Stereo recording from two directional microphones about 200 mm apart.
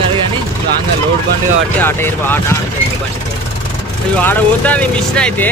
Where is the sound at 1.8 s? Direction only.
10° left (ahead or behind).